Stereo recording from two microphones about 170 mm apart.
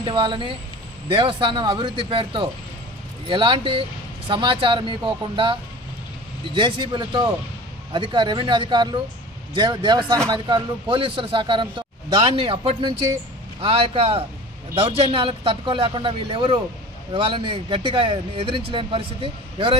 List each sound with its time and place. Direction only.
0.0 s a man's voice: 30° right (ahead or behind)